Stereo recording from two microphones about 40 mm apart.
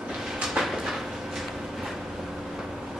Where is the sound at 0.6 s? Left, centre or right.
Centre.